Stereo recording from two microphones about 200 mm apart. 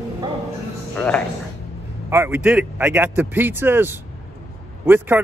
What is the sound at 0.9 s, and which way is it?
Speech, 5° left (ahead or behind).